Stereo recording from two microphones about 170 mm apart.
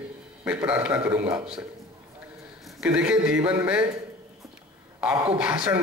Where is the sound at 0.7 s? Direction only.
10° right (ahead or behind).